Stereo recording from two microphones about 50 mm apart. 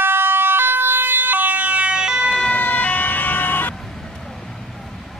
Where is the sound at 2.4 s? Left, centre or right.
Left.